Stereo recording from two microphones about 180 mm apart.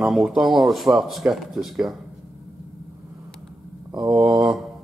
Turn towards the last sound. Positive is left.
turn(degrees=0)  # may be behind; listen again after turning